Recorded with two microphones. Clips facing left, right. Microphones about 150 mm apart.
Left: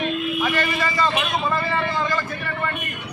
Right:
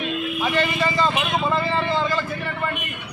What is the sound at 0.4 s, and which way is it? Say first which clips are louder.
Speech: right 5 dB; 20° right (ahead or behind).